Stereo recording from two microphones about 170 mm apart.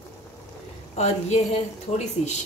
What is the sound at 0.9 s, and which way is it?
A woman's voice, 40° left (ahead or behind).